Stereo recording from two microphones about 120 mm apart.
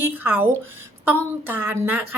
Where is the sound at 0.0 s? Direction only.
15° right (ahead or behind).